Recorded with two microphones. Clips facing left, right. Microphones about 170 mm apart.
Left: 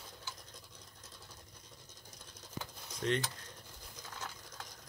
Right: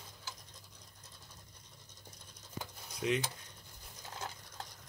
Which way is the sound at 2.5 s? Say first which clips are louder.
Even; 5° right (ahead or behind).